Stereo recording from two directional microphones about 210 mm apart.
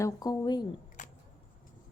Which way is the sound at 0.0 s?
20° left (ahead or behind).